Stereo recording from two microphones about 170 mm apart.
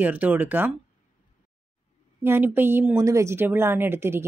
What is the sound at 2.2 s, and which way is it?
Speech, 10° right (ahead or behind).